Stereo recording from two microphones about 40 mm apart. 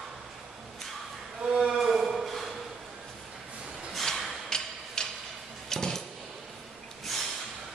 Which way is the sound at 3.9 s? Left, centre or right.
Centre.